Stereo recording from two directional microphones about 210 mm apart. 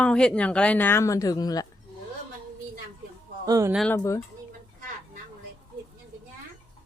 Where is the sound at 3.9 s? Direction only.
15° left (ahead or behind).